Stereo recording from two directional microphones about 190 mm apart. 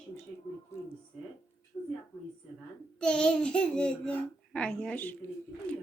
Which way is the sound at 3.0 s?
5° left (ahead or behind).